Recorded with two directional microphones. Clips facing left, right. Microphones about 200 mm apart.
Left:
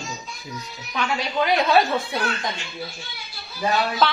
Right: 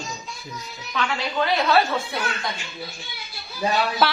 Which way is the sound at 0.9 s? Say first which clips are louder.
Left 1 dB; 15° left (ahead or behind).